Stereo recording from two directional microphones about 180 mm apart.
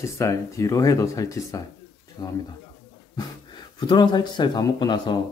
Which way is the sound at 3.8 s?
25° left (ahead or behind).